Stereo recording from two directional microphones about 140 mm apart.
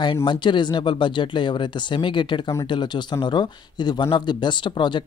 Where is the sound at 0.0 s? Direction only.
35° left (ahead or behind).